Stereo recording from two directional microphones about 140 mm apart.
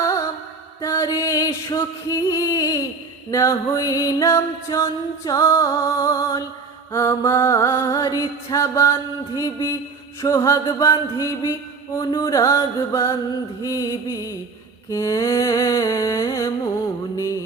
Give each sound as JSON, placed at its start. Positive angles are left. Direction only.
{"t": 0.0, "sound": "mantra", "side_deg": 20}
{"t": 0.8, "sound": "music", "side_deg": 20}